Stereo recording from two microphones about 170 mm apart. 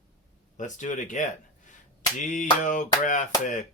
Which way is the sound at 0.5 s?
45° left (ahead or behind).